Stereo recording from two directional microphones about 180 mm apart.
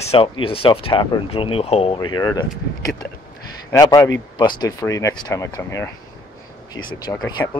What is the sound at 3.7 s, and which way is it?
Speech, 20° left (ahead or behind).